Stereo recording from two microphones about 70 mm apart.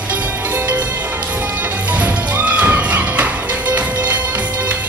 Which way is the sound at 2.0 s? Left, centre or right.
Right.